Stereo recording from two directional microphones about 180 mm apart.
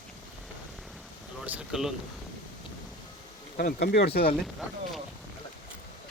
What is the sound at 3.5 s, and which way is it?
Speech, 55° left (ahead or behind).